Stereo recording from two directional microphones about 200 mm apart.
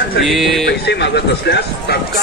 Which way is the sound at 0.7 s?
55° left (ahead or behind).